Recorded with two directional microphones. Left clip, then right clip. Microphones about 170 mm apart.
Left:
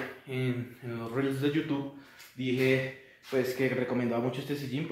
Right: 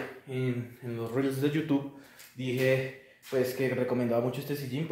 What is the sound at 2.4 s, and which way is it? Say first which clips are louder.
Speech: left 2 dB; 60° right (ahead or behind).